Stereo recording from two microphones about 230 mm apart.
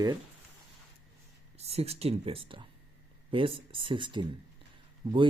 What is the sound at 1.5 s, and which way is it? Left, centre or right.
Speech, right.